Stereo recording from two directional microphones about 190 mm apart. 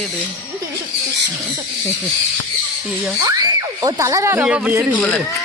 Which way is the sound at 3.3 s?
20° right (ahead or behind).